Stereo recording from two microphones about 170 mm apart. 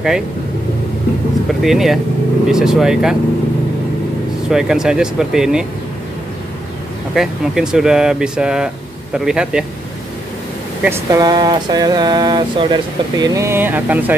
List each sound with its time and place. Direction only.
1.5 s speech: centre (ahead or behind)
4.5 s speech: 5° right (ahead or behind)
7.2 s speech: 5° right (ahead or behind)
10.8 s a sound: 15° right (ahead or behind)
13.2 s speech: 20° right (ahead or behind)